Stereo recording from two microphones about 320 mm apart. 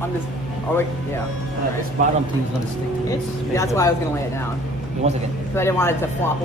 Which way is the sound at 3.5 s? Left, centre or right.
Centre.